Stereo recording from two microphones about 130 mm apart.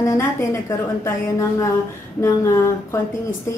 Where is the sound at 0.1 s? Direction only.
20° left (ahead or behind).